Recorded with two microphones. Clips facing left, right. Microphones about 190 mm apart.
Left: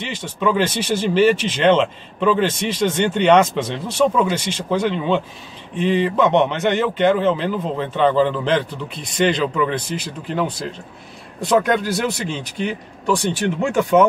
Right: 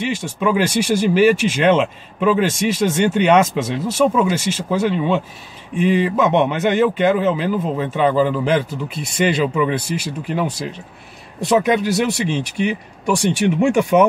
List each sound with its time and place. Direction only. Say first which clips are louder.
0.1 s speech: left 3 dB; 10° right (ahead or behind)
11.4 s speech: right 1 dB; 5° right (ahead or behind)